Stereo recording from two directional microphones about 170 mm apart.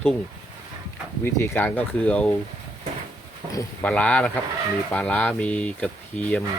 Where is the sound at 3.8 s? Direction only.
5° left (ahead or behind).